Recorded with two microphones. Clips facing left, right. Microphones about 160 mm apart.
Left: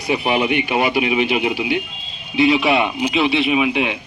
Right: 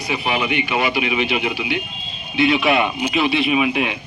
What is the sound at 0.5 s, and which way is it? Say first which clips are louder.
Speech: left 2 dB; 45° left (ahead or behind).